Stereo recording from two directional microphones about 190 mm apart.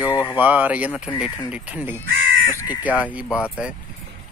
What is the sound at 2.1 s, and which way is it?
Crow, 85° right.